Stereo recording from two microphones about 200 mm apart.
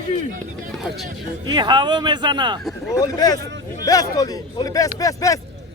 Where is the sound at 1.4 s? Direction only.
20° right (ahead or behind).